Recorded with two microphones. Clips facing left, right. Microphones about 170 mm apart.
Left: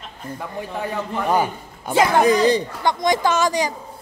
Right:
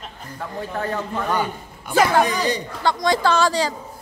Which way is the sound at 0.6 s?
15° left (ahead or behind).